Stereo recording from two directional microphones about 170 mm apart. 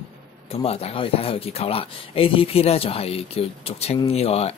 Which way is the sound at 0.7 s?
35° left (ahead or behind).